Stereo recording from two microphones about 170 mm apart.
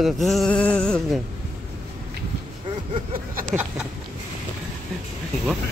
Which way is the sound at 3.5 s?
Centre (ahead or behind).